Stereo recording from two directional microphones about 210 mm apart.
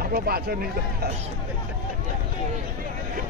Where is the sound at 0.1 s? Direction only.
45° right (ahead or behind).